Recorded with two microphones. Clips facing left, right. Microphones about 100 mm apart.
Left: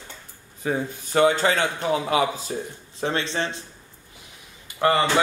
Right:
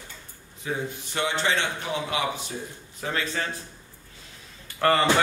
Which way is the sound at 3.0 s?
30° left (ahead or behind).